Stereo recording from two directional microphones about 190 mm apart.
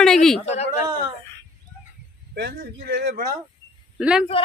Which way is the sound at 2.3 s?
55° right (ahead or behind).